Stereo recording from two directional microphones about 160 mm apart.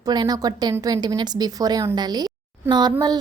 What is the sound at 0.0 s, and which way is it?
A woman's voice, 25° right (ahead or behind).